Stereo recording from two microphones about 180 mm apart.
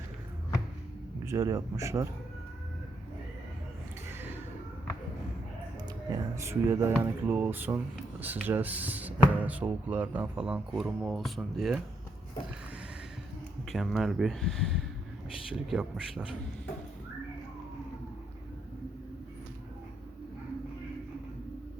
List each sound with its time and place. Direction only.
1.2 s speech: 15° right (ahead or behind)
4.1 s a sound: 10° right (ahead or behind)
6.1 s speech: 15° right (ahead or behind)
13.7 s speech: centre (ahead or behind)